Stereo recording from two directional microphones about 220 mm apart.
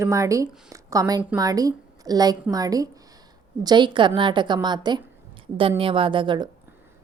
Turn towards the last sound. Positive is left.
turn(degrees=-20)  # may be behind; listen again after turning